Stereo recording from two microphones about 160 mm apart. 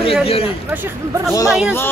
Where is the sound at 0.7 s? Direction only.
10° right (ahead or behind).